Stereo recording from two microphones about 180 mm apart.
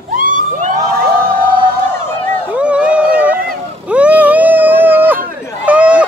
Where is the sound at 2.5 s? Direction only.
5° right (ahead or behind).